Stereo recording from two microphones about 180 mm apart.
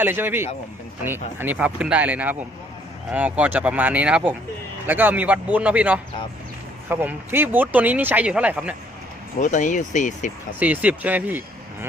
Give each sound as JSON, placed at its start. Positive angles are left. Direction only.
{"t": 0.0, "sound": "speech", "side_deg": -10}
{"t": 9.4, "sound": "speech", "side_deg": 45}
{"t": 10.6, "sound": "speech", "side_deg": -10}